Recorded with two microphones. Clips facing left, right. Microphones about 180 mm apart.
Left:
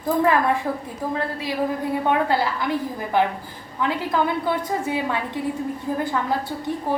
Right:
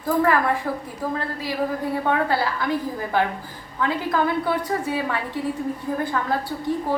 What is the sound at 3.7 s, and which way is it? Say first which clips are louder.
A woman's voice: even; 20° left (ahead or behind).